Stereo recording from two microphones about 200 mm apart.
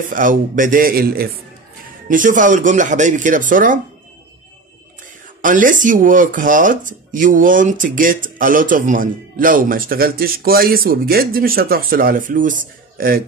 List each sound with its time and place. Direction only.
0.1 s speech: 40° right (ahead or behind)
5.4 s speech: 40° right (ahead or behind)